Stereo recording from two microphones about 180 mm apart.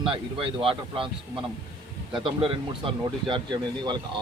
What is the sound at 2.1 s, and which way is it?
Speech, 30° right (ahead or behind).